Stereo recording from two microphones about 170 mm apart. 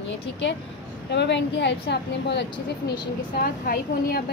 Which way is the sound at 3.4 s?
60° left (ahead or behind).